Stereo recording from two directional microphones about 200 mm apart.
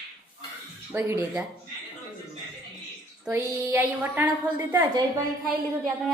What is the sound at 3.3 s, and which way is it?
A woman's voice, 10° right (ahead or behind).